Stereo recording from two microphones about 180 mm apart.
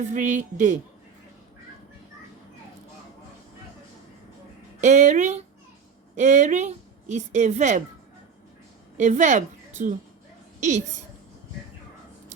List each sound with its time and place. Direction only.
0.0 s speech: 45° right (ahead or behind)
4.8 s a woman's voice: 40° right (ahead or behind)
9.0 s a woman's voice: 40° right (ahead or behind)